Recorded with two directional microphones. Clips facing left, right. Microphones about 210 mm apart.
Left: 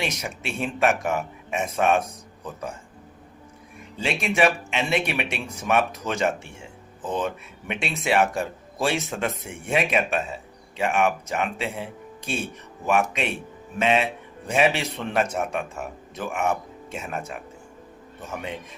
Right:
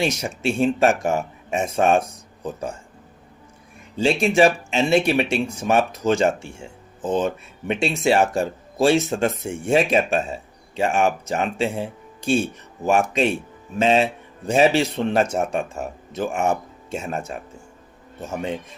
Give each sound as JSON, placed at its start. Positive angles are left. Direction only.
{"t": 0.0, "sound": "speech", "side_deg": -30}
{"t": 3.9, "sound": "speech", "side_deg": -30}